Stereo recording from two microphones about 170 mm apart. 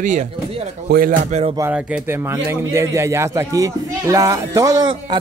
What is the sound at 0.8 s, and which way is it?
Speech, 60° right (ahead or behind).